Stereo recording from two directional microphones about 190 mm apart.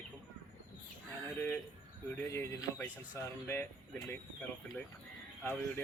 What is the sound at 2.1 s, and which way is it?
Speech, 15° left (ahead or behind).